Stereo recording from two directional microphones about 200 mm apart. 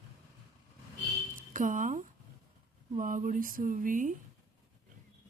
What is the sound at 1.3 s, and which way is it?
Speech, 40° right (ahead or behind).